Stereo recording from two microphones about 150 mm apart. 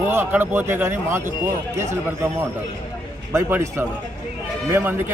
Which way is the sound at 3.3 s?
15° right (ahead or behind).